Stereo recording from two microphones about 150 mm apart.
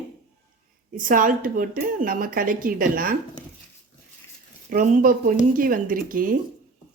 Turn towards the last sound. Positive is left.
turn(degrees=-70)  # may be behind; listen again after turning